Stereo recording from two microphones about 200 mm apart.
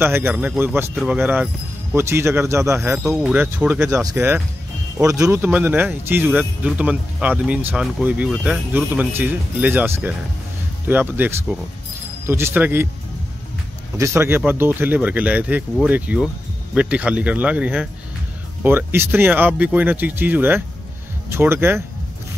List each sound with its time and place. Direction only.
0.0 s speech: 10° right (ahead or behind)
13.9 s speech: 15° right (ahead or behind)